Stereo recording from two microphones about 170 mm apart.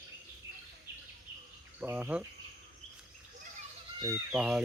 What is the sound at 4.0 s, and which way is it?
Speech, 20° right (ahead or behind).